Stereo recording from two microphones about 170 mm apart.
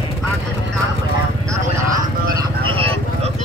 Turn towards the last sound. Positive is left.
turn(degrees=-35)  # may be behind; listen again after turning